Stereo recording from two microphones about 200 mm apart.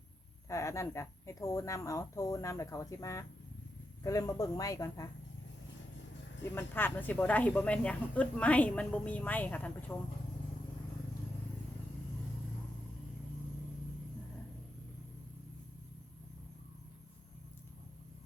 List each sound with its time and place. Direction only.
0.4 s speech: 15° left (ahead or behind)
6.5 s speech: 10° left (ahead or behind)